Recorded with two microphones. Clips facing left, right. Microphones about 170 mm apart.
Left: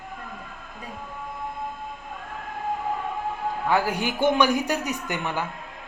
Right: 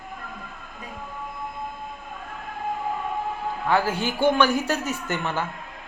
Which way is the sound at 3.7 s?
15° left (ahead or behind).